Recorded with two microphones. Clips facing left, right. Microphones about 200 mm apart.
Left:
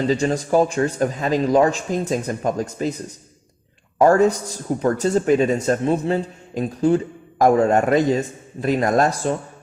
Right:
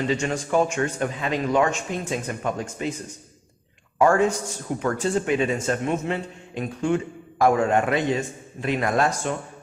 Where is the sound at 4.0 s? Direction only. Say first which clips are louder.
Left 4 dB; 35° left (ahead or behind).